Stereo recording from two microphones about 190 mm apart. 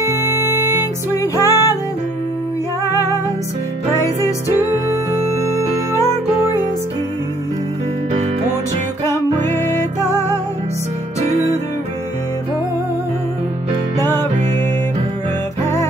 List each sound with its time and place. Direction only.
0.0 s music: 20° left (ahead or behind)
9.0 s music: 15° left (ahead or behind)